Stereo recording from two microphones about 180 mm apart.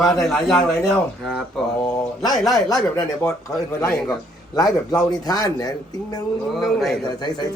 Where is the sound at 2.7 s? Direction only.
5° left (ahead or behind).